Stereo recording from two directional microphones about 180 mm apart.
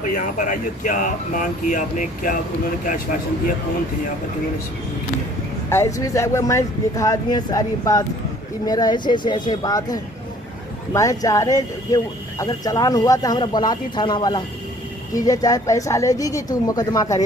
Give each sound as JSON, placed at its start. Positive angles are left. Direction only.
{"t": 0.0, "sound": "speech", "side_deg": 45}
{"t": 5.7, "sound": "speech", "side_deg": 15}